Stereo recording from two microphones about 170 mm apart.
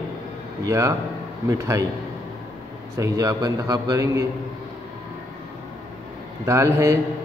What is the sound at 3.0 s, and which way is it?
A man's voice, 20° right (ahead or behind).